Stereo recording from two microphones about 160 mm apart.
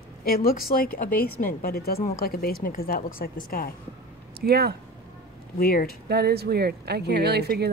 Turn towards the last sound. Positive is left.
turn(degrees=-90)